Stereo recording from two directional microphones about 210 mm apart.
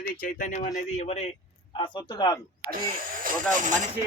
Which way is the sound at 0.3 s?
40° left (ahead or behind).